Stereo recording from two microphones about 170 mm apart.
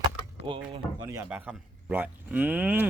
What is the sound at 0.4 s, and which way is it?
Speech, 30° right (ahead or behind).